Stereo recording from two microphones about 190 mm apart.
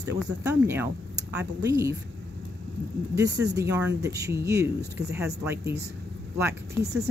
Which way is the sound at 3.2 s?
20° right (ahead or behind).